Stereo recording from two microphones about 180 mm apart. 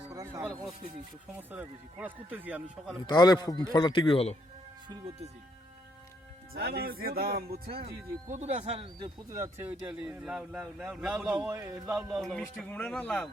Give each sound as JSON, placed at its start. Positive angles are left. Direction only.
{"t": 0.1, "sound": "music", "side_deg": -15}
{"t": 1.4, "sound": "speech", "side_deg": -10}
{"t": 3.0, "sound": "a man's voice", "side_deg": 25}
{"t": 4.9, "sound": "speech", "side_deg": -30}
{"t": 6.5, "sound": "speech", "side_deg": -60}
{"t": 8.3, "sound": "speech", "side_deg": -40}
{"t": 12.1, "sound": "speech", "side_deg": 0}